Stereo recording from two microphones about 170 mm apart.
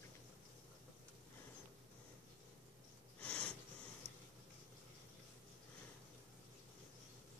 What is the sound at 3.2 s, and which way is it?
Snort, 5° left (ahead or behind).